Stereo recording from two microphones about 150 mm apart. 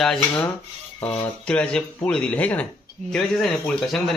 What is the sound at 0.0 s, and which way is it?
Speech, 5° left (ahead or behind).